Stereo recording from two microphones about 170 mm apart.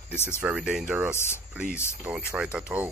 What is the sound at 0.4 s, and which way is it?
Speech, 5° right (ahead or behind).